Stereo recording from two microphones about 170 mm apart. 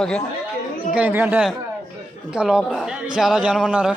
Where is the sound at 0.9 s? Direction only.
10° right (ahead or behind).